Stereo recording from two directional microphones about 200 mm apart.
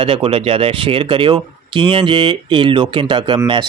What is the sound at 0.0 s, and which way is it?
Speech, 30° right (ahead or behind).